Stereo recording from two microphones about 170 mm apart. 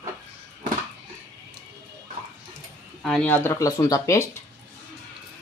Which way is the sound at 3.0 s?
5° left (ahead or behind).